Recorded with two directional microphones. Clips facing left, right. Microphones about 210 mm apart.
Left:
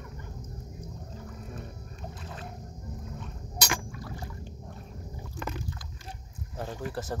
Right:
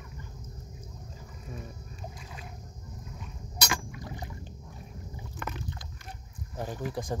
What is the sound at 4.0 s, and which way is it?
Rowboat, 20° right (ahead or behind).